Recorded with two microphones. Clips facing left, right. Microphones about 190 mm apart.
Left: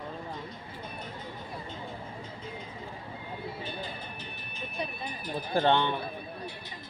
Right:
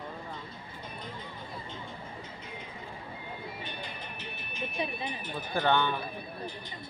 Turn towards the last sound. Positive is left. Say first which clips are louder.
# left 2 dB
turn(degrees=25)  # may be behind; listen again after turning